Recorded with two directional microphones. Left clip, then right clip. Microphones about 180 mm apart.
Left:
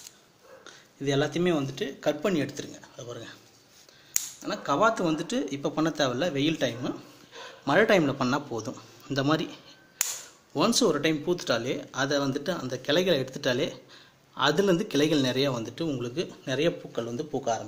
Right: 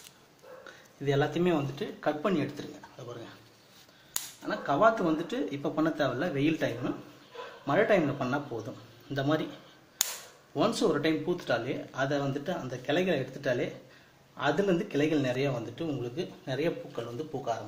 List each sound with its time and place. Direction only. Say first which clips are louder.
1.0 s speech: left 2 dB; 45° left (ahead or behind)
4.5 s speech: even; 55° left (ahead or behind)
7.6 s a man's voice: left 4 dB; 60° left (ahead or behind)
10.5 s a man's voice: left 3 dB; 55° left (ahead or behind)